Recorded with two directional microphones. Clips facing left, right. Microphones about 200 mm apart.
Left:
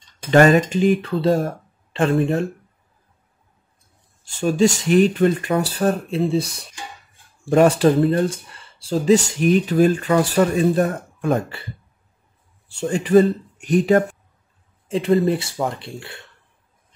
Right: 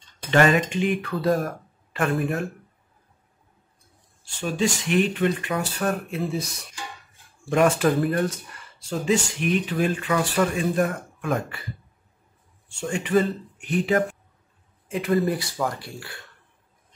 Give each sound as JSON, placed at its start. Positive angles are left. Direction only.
{"t": 0.3, "sound": "speech", "side_deg": 40}
{"t": 4.4, "sound": "speech", "side_deg": 40}
{"t": 14.9, "sound": "speech", "side_deg": 30}